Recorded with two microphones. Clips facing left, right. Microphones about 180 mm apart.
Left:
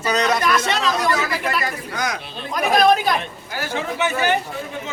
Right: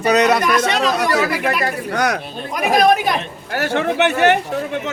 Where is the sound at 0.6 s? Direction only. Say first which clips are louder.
Right 4 dB; 50° right (ahead or behind).